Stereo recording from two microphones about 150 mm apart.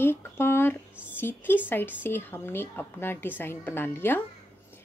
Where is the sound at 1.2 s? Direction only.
15° left (ahead or behind).